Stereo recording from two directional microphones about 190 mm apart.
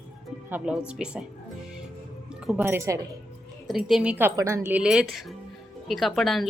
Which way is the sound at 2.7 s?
15° right (ahead or behind).